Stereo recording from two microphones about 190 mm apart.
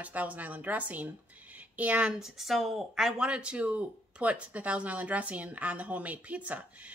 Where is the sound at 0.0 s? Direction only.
10° right (ahead or behind).